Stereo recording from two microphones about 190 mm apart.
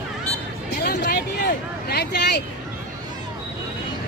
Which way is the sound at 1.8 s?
60° left (ahead or behind).